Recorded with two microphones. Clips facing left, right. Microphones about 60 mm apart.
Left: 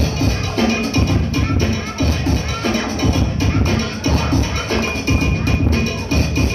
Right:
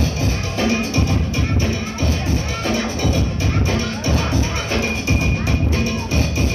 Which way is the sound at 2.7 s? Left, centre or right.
Left.